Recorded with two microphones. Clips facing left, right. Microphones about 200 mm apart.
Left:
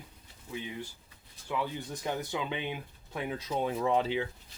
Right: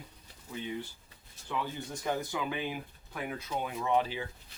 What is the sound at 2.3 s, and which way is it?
Speech, 20° left (ahead or behind).